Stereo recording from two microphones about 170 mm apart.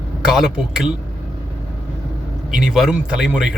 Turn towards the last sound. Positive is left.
turn(degrees=-5)  # may be behind; listen again after turning